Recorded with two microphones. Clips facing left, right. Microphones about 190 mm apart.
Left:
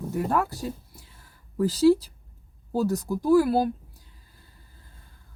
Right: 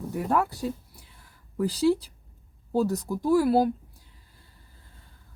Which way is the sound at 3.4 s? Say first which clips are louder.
Right 2 dB; 25° right (ahead or behind).